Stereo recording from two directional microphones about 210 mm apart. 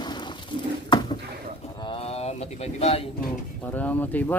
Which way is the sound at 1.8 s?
25° left (ahead or behind).